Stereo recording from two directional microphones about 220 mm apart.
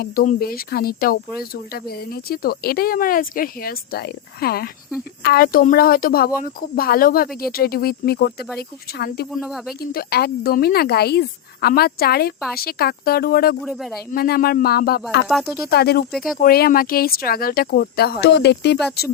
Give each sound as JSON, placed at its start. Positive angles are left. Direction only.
{"t": 0.0, "sound": "speech", "side_deg": 40}
{"t": 9.4, "sound": "speech", "side_deg": 0}
{"t": 9.9, "sound": "speech", "side_deg": 45}
{"t": 13.7, "sound": "speech", "side_deg": 0}
{"t": 14.1, "sound": "speech", "side_deg": 40}
{"t": 15.3, "sound": "speech", "side_deg": 0}
{"t": 15.6, "sound": "speech", "side_deg": 45}
{"t": 16.1, "sound": "speech", "side_deg": 0}
{"t": 16.4, "sound": "speech", "side_deg": 40}